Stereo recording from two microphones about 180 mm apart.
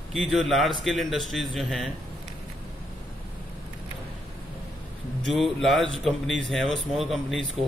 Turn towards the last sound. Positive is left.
turn(degrees=0)  # may be behind; listen again after turning